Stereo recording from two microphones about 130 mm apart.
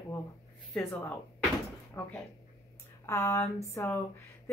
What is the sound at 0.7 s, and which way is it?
A woman's voice, 15° left (ahead or behind).